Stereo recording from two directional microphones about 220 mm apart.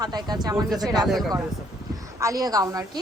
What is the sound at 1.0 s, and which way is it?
Speech, centre (ahead or behind).